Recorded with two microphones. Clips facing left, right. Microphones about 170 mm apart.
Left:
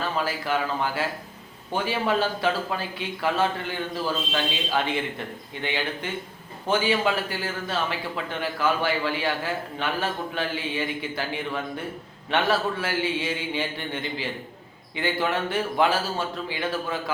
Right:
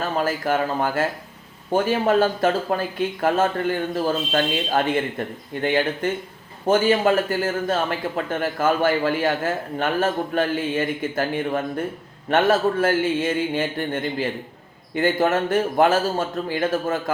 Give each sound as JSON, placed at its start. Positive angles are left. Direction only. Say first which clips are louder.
{"t": 0.2, "sound": "a man's voice", "louder": "right 6 dB", "side_deg": -45}